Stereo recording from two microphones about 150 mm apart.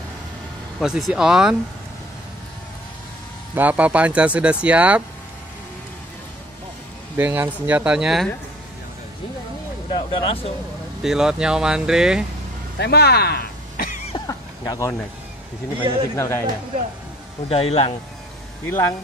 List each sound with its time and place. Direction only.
0.7 s speech: centre (ahead or behind)
3.5 s speech: 10° right (ahead or behind)
7.2 s speech: 10° right (ahead or behind)
9.8 s speech: 35° left (ahead or behind)
11.0 s speech: 5° right (ahead or behind)
12.7 s speech: 90° left
14.2 s neigh: 25° left (ahead or behind)
16.2 s speech: 15° left (ahead or behind)
17.5 s speech: 40° left (ahead or behind)
18.7 s speech: 15° left (ahead or behind)